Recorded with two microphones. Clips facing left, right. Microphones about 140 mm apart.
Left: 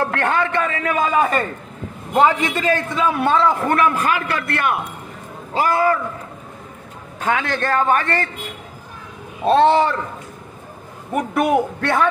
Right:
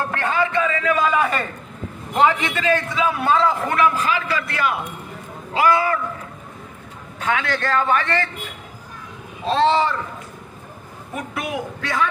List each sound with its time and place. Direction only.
0.1 s a man's voice: 65° left (ahead or behind)
2.4 s a man's voice: 45° left (ahead or behind)
5.5 s a man's voice: 45° left (ahead or behind)
7.2 s a man's voice: 45° left (ahead or behind)
9.4 s a man's voice: 60° left (ahead or behind)
11.1 s a man's voice: 60° left (ahead or behind)